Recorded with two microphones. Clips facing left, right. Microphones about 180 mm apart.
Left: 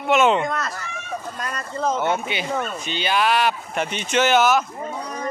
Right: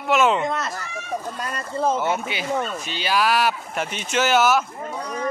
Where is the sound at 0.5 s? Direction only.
25° right (ahead or behind).